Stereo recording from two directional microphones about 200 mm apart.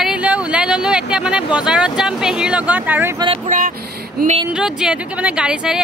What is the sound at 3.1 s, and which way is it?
Speech, 25° right (ahead or behind).